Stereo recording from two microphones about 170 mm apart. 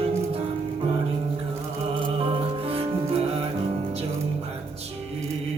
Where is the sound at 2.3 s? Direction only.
35° right (ahead or behind).